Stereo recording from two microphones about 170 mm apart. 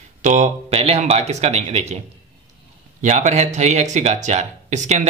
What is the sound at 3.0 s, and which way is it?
Speech, 45° right (ahead or behind).